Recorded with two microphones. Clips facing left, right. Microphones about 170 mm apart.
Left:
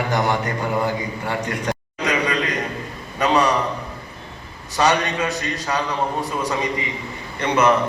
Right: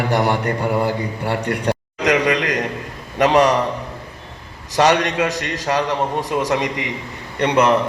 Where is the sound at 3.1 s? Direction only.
90° right.